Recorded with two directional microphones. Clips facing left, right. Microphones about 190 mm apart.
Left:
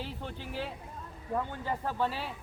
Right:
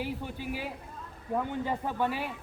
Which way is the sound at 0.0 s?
10° right (ahead or behind).